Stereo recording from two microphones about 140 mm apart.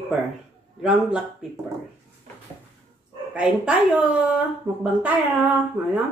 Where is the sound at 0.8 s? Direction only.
5° right (ahead or behind).